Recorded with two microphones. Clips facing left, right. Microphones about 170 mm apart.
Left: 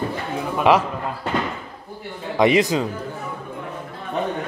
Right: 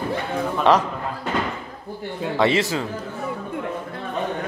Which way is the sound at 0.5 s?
10° left (ahead or behind).